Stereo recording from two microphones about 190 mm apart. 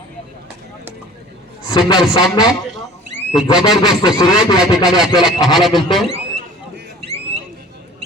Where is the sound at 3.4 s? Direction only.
5° right (ahead or behind).